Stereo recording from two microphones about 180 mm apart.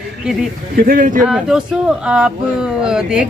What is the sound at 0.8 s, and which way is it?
Speech, 50° right (ahead or behind).